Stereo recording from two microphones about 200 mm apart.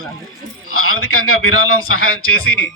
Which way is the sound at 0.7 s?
90° left.